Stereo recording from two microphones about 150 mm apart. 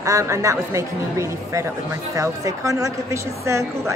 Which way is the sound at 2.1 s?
20° right (ahead or behind).